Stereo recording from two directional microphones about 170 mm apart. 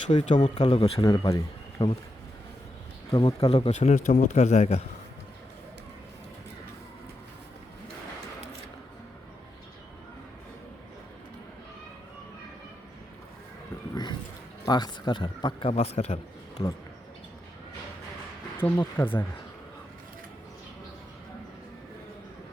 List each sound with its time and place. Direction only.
0.1 s speech: 40° left (ahead or behind)
1.0 s speech: 25° left (ahead or behind)
3.1 s speech: 35° left (ahead or behind)
13.9 s a sound: 25° left (ahead or behind)
14.7 s speech: 25° left (ahead or behind)
15.7 s speech: 35° left (ahead or behind)
18.5 s speech: 10° left (ahead or behind)